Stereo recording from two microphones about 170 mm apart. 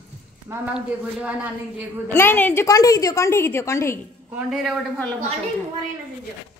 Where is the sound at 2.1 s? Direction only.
10° left (ahead or behind).